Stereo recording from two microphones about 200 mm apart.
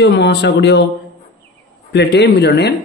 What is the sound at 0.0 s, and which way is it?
Speech, 55° left (ahead or behind).